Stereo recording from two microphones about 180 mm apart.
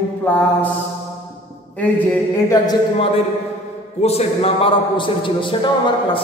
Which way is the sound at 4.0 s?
35° left (ahead or behind).